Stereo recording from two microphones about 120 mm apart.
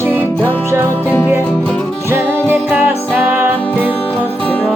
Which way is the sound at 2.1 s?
15° right (ahead or behind).